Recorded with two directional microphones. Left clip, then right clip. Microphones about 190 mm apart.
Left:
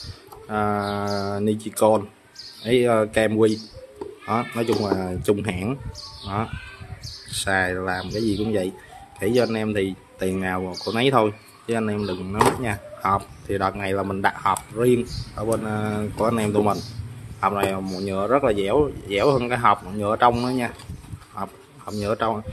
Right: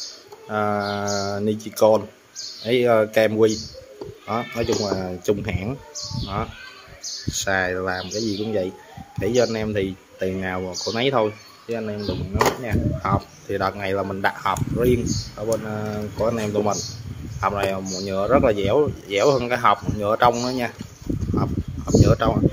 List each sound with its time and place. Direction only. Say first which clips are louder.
0.5 s speech: right 1 dB; 5° left (ahead or behind)
11.6 s speech: left 3 dB; 25° left (ahead or behind)
13.0 s speech: left 6 dB; 10° left (ahead or behind)